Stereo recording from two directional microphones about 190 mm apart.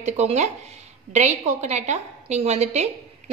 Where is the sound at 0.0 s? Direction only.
35° right (ahead or behind).